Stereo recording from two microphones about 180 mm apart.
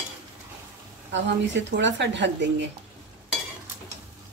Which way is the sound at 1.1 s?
85° right.